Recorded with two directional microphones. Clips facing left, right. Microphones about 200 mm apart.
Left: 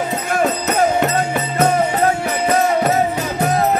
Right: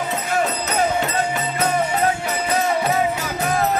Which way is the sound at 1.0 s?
50° left (ahead or behind).